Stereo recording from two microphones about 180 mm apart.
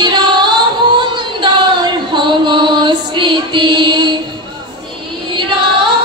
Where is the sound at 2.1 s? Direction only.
25° right (ahead or behind).